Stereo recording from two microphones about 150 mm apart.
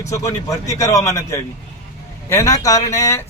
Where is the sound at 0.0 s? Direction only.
20° left (ahead or behind).